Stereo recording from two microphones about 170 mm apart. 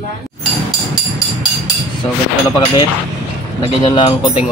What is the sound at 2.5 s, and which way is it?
Speech, 30° left (ahead or behind).